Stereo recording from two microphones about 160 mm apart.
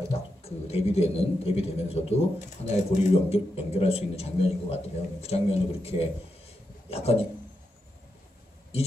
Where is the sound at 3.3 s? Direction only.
40° left (ahead or behind).